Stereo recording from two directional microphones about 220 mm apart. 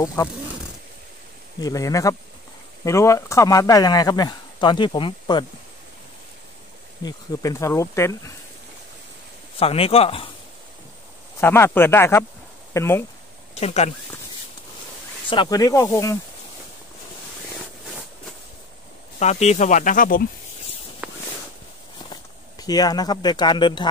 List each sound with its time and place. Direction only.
0.0 s speech: 15° left (ahead or behind)
1.6 s speech: 15° left (ahead or behind)
7.1 s speech: 15° left (ahead or behind)
9.6 s speech: 25° left (ahead or behind)
11.4 s speech: 10° left (ahead or behind)
13.6 s speech: 30° left (ahead or behind)
15.2 s speech: 20° left (ahead or behind)
19.1 s speech: 30° left (ahead or behind)
21.0 s a sound: 5° right (ahead or behind)
22.1 s speech: 15° left (ahead or behind)